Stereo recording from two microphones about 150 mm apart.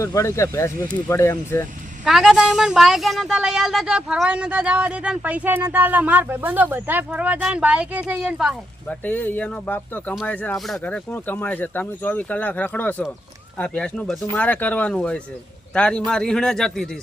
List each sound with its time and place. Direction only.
0.0 s speech: 20° left (ahead or behind)
2.0 s speech: 5° right (ahead or behind)
8.9 s a man's voice: 10° left (ahead or behind)